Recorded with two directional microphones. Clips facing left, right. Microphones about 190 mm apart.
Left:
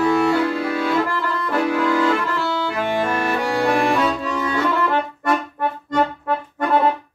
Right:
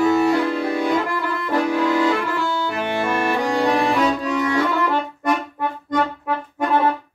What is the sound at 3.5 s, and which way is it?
Saxophone, 20° right (ahead or behind).